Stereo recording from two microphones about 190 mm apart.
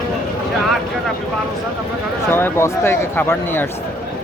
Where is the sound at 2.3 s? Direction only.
10° left (ahead or behind).